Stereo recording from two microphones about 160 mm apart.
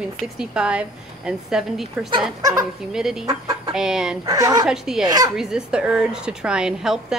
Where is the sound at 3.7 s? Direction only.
5° right (ahead or behind).